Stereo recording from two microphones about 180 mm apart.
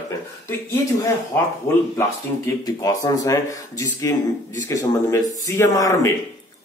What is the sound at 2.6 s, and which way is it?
A man's voice, 20° left (ahead or behind).